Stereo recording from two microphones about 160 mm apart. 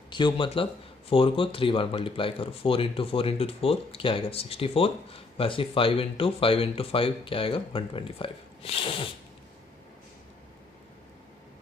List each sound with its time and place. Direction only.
0.1 s speech: 30° left (ahead or behind)